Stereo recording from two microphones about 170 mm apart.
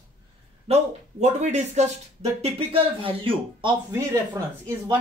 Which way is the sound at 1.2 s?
40° right (ahead or behind).